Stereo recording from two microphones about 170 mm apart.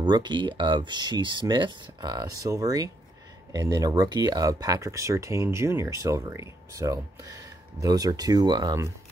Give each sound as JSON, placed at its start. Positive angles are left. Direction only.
{"t": 0.0, "sound": "speech", "side_deg": -25}